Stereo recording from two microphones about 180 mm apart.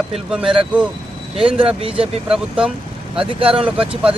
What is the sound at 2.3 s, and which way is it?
Speech, 5° right (ahead or behind).